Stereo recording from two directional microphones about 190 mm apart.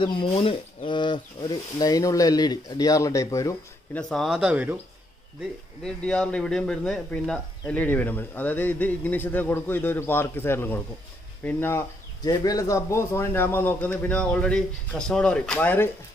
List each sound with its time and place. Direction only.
0.0 s speech: 25° left (ahead or behind)
4.1 s speech: centre (ahead or behind)
5.9 s speech: 5° left (ahead or behind)